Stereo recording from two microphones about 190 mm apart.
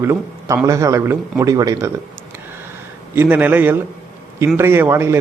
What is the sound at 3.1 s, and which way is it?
A man's voice, 10° right (ahead or behind).